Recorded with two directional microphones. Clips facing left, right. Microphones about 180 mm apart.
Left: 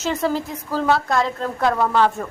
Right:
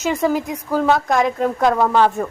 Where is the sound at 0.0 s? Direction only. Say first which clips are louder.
Right 3 dB; 10° right (ahead or behind).